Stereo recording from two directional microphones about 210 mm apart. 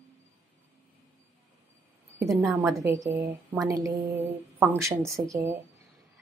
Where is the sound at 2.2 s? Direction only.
Centre (ahead or behind).